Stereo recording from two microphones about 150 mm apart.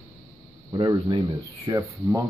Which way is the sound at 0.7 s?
30° right (ahead or behind).